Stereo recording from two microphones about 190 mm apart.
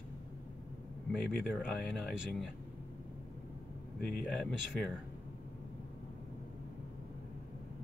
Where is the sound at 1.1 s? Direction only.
Centre (ahead or behind).